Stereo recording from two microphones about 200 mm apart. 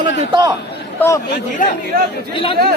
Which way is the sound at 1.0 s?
15° left (ahead or behind).